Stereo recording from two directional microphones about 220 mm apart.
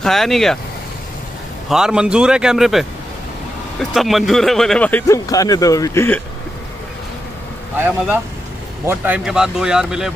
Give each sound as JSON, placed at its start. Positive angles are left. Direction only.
{"t": 0.0, "sound": "speech", "side_deg": 0}
{"t": 1.7, "sound": "speech", "side_deg": -5}
{"t": 3.9, "sound": "speech", "side_deg": 0}
{"t": 7.7, "sound": "speech", "side_deg": -10}